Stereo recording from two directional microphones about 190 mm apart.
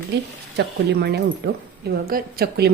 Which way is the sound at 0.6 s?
60° right (ahead or behind).